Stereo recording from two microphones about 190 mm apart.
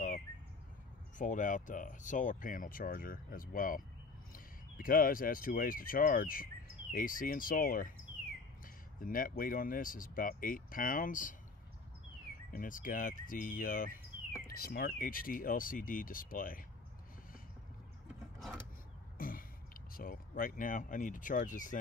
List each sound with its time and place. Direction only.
1.1 s speech: 45° left (ahead or behind)
9.0 s speech: 45° left (ahead or behind)
12.5 s speech: 45° left (ahead or behind)
19.1 s speech: 50° left (ahead or behind)